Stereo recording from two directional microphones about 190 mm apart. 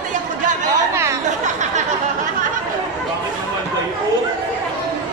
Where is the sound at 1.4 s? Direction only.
40° right (ahead or behind).